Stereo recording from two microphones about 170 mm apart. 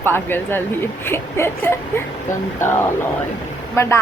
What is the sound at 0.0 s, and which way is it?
Speech, 15° left (ahead or behind).